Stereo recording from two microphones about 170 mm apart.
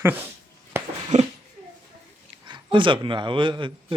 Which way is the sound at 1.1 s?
45° right (ahead or behind).